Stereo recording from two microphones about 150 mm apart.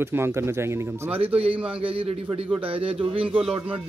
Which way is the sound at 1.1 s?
40° right (ahead or behind).